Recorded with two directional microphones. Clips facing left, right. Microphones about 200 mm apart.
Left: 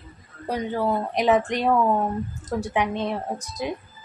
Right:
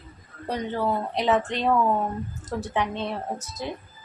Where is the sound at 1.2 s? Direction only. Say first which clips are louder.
Left 4 dB; 15° left (ahead or behind).